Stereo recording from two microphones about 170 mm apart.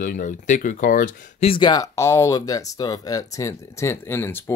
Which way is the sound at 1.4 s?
30° left (ahead or behind).